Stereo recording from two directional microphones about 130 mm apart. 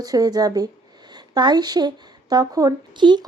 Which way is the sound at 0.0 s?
30° right (ahead or behind).